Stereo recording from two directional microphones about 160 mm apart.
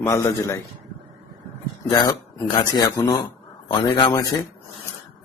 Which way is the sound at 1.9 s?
25° left (ahead or behind).